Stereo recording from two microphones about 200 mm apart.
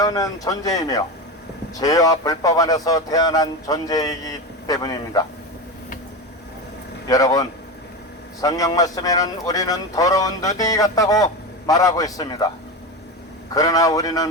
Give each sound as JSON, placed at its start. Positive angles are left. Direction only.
{"t": 0.0, "sound": "speech", "side_deg": 20}
{"t": 7.1, "sound": "a man's voice", "side_deg": 20}
{"t": 13.5, "sound": "speech", "side_deg": 20}